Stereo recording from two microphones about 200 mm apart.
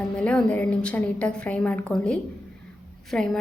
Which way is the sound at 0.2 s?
5° left (ahead or behind).